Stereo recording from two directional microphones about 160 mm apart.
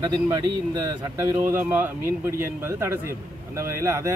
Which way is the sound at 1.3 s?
10° right (ahead or behind).